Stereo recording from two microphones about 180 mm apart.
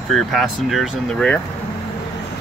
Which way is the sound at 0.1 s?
Centre (ahead or behind).